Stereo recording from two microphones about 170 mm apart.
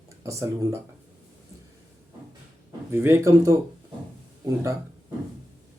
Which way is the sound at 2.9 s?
15° right (ahead or behind).